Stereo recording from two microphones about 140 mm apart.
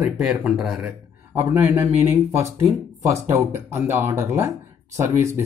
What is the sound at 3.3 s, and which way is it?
Speech, 20° right (ahead or behind).